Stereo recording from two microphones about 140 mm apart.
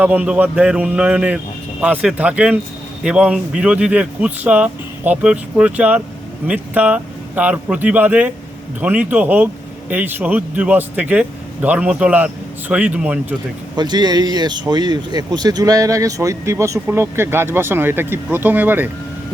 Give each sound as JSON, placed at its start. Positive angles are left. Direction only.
{"t": 0.0, "sound": "a man's voice", "side_deg": -10}
{"t": 13.7, "sound": "speech", "side_deg": -30}